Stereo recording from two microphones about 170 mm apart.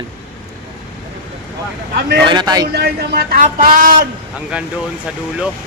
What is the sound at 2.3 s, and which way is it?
Speech, 25° right (ahead or behind).